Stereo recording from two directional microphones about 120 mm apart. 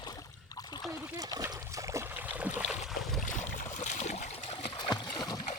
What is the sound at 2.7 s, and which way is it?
Boat, centre (ahead or behind).